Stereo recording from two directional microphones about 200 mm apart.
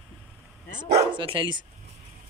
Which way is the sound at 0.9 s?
25° right (ahead or behind).